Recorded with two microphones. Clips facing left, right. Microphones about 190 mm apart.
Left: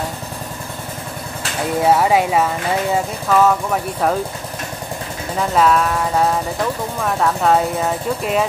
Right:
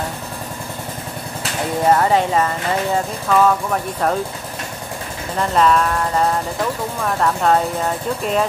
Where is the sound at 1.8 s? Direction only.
5° left (ahead or behind).